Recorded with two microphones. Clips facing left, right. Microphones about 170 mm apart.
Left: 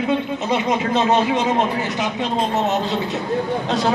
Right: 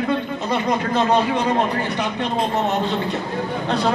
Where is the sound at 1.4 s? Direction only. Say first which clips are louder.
Even; 5° left (ahead or behind).